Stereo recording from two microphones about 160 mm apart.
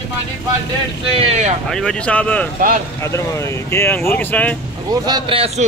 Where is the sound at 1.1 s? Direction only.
45° right (ahead or behind).